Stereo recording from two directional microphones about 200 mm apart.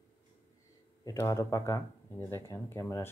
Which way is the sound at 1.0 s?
15° left (ahead or behind).